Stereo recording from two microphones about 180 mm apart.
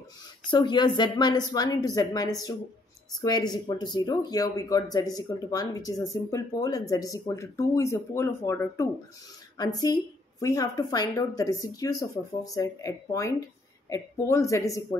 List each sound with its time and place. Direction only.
0.5 s speech: 25° left (ahead or behind)